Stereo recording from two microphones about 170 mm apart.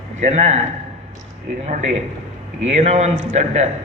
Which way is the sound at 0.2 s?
40° right (ahead or behind).